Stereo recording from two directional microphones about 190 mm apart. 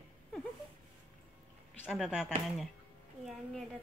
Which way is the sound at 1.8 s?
5° right (ahead or behind).